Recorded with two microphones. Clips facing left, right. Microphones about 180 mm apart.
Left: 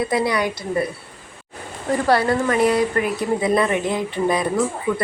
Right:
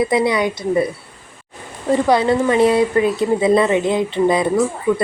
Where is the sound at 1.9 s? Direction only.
20° right (ahead or behind).